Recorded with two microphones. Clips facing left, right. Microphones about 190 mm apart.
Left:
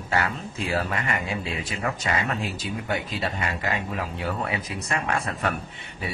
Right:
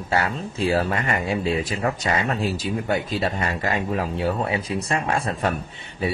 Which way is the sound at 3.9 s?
30° right (ahead or behind).